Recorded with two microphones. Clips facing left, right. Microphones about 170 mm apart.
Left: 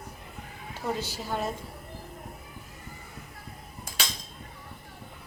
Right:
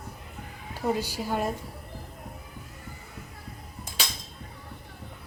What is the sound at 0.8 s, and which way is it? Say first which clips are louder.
Speech: right 4 dB; 10° right (ahead or behind).